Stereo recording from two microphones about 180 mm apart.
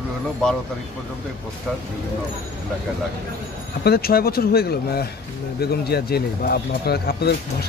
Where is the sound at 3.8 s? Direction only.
60° left (ahead or behind).